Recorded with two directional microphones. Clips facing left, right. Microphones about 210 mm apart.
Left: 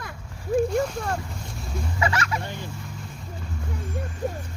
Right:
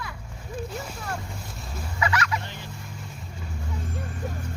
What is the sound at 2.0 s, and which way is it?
Speech, 30° left (ahead or behind).